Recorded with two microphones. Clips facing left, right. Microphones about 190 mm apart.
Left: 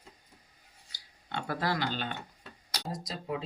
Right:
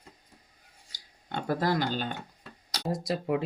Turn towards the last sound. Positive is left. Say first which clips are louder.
# right 8 dB
turn(degrees=-65)  # may be behind; listen again after turning